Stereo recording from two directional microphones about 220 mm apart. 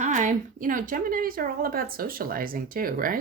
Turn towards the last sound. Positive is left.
turn(degrees=-40)  # may be behind; listen again after turning